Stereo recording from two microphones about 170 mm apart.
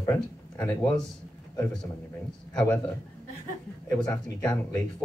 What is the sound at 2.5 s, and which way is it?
Speech, 5° left (ahead or behind).